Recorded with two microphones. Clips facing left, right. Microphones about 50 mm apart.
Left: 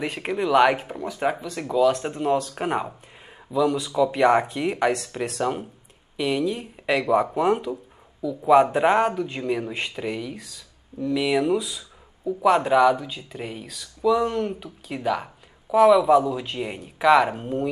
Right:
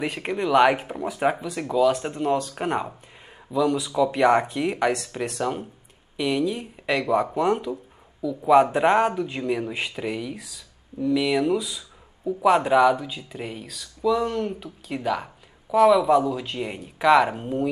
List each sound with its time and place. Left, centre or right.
0.0 s speech: centre